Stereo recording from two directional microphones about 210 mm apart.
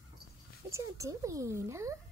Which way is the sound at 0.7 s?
15° right (ahead or behind).